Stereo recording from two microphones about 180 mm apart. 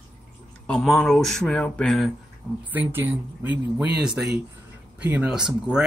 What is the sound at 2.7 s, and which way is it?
Speech, 10° right (ahead or behind).